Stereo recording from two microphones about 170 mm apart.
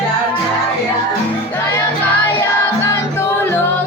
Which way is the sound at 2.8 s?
15° left (ahead or behind).